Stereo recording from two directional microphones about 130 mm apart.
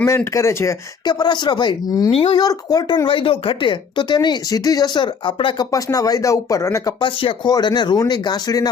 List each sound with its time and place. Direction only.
0.3 s speech: 20° left (ahead or behind)
2.1 s speech: 45° left (ahead or behind)
2.4 s speech: 30° left (ahead or behind)
5.7 s speech: 25° left (ahead or behind)
7.0 s speech: 40° left (ahead or behind)